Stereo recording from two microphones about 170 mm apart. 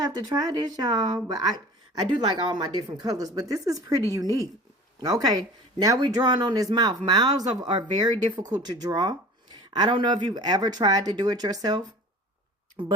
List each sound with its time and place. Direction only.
0.0 s speech: 25° right (ahead or behind)
12.8 s speech: 30° right (ahead or behind)